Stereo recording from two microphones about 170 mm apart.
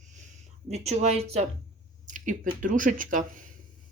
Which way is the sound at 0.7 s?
40° right (ahead or behind).